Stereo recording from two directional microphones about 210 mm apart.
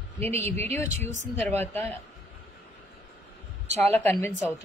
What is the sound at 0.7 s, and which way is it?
Speech, 10° left (ahead or behind).